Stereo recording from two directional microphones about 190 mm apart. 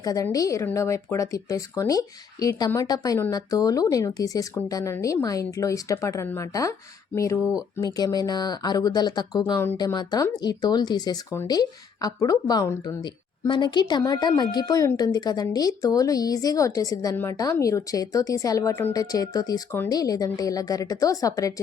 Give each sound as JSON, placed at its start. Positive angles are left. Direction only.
{"t": 0.0, "sound": "speech", "side_deg": 20}
{"t": 7.9, "sound": "speech", "side_deg": 20}